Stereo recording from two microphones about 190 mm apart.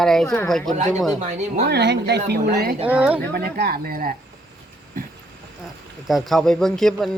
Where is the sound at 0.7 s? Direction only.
40° right (ahead or behind).